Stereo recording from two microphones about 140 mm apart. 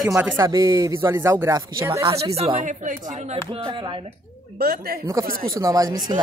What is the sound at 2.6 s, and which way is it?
Speech, 65° right (ahead or behind).